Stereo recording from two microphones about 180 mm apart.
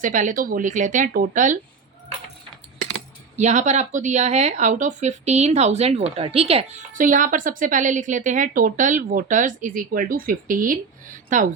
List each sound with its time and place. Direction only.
0.0 s speech: 45° right (ahead or behind)
3.3 s speech: 40° right (ahead or behind)
6.9 s speech: 45° right (ahead or behind)